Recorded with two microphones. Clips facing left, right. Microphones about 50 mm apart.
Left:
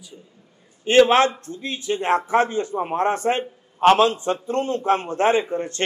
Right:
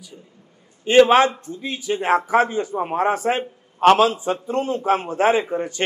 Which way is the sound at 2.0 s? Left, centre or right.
Centre.